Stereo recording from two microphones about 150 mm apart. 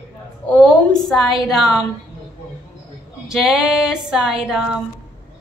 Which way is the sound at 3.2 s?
5° right (ahead or behind).